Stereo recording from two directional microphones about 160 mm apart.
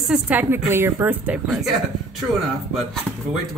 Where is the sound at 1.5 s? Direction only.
Centre (ahead or behind).